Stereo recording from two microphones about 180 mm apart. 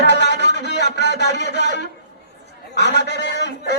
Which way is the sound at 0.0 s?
70° left (ahead or behind).